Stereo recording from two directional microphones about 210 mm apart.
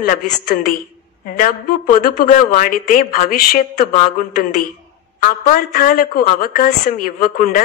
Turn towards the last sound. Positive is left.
turn(degrees=40)  # may be behind; listen again after turning